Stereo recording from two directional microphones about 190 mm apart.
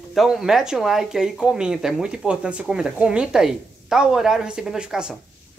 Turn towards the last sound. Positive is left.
turn(degrees=-5)  # may be behind; listen again after turning